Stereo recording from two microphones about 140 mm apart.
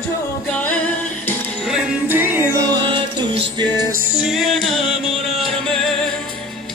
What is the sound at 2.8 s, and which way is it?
Music, 35° right (ahead or behind).